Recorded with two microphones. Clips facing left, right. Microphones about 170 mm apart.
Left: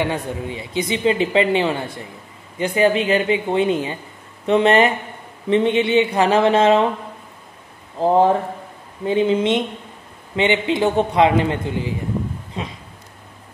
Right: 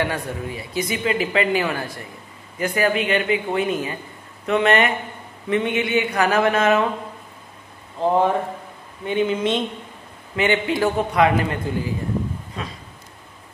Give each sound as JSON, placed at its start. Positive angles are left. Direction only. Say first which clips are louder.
{"t": 0.0, "sound": "speech", "louder": "left 2 dB", "side_deg": 20}
{"t": 8.0, "sound": "speech", "louder": "left 3 dB", "side_deg": 35}
{"t": 12.6, "sound": "a sound", "louder": "left 4 dB", "side_deg": 25}